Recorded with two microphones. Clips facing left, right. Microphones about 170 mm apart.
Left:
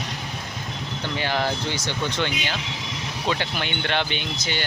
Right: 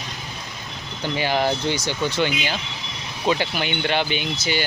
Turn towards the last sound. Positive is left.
turn(degrees=-5)  # may be behind; listen again after turning